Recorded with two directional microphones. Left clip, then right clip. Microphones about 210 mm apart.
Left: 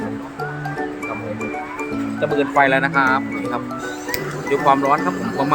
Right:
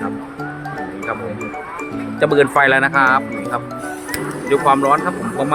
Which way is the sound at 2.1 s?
50° right (ahead or behind).